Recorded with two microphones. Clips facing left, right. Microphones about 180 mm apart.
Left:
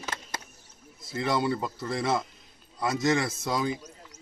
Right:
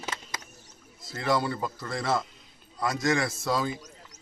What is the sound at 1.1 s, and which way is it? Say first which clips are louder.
Speech: even; 20° left (ahead or behind).